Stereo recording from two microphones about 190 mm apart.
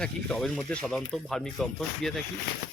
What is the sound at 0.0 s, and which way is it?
Speech, centre (ahead or behind).